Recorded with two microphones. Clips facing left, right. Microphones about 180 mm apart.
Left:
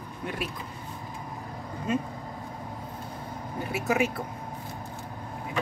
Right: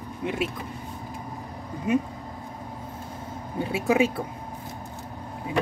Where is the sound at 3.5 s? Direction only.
25° right (ahead or behind).